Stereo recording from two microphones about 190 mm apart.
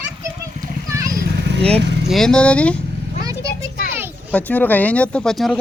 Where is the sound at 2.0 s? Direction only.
Centre (ahead or behind).